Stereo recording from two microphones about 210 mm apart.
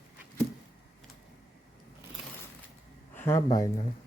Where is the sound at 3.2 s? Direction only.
10° left (ahead or behind).